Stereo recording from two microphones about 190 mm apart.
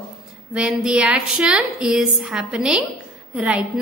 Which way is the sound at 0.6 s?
5° right (ahead or behind).